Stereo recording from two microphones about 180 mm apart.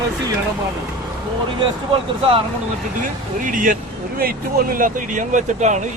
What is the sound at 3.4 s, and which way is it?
Speech, 45° right (ahead or behind).